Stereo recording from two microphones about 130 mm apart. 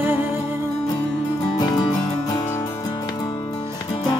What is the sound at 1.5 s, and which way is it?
Music, 35° left (ahead or behind).